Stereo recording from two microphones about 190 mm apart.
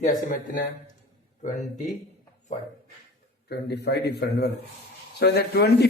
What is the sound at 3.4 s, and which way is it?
A man's voice, 60° left (ahead or behind).